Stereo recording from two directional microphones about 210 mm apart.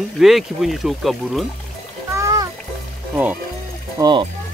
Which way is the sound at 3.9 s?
20° right (ahead or behind).